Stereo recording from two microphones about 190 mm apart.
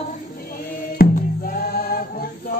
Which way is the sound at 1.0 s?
45° left (ahead or behind).